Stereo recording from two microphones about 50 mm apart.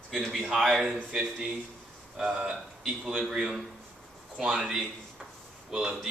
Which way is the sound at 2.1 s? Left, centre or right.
Centre.